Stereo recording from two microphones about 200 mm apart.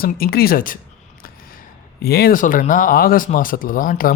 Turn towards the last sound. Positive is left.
turn(degrees=45)  # may be behind; listen again after turning